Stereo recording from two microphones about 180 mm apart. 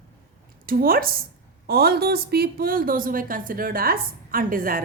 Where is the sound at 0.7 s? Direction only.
55° right (ahead or behind).